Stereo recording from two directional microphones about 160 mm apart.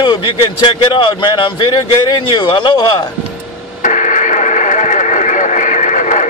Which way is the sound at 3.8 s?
50° left (ahead or behind).